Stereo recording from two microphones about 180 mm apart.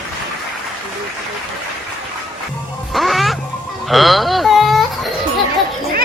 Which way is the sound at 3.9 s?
Centre (ahead or behind).